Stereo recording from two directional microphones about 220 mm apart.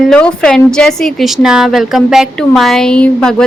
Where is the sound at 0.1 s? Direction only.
5° left (ahead or behind).